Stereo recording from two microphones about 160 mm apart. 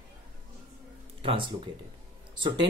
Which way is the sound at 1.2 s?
35° right (ahead or behind).